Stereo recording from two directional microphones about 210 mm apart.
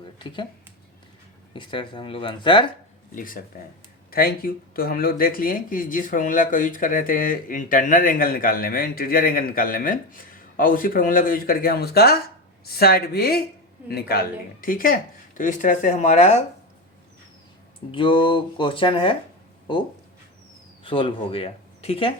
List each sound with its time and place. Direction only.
0.0 s a sound: 25° left (ahead or behind)
1.5 s speech: 25° left (ahead or behind)
3.2 s speech: 40° left (ahead or behind)
17.9 s speech: 25° left (ahead or behind)
20.8 s speech: 25° left (ahead or behind)